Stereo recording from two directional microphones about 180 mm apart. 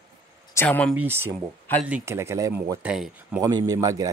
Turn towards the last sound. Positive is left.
turn(degrees=-20)  # may be behind; listen again after turning